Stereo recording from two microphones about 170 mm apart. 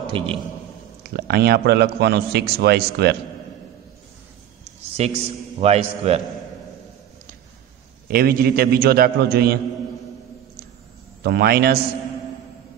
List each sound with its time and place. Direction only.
0.0 s a man's voice: 30° right (ahead or behind)
1.0 s a man's voice: 70° right (ahead or behind)
5.0 s a man's voice: 40° right (ahead or behind)
8.1 s a man's voice: 60° right (ahead or behind)
11.2 s a man's voice: 70° right (ahead or behind)